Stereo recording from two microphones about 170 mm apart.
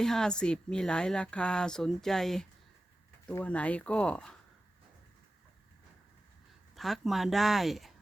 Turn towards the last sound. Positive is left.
turn(degrees=0)  # may be behind; listen again after turning